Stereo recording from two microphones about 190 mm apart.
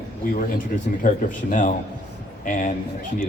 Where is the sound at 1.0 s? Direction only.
45° left (ahead or behind).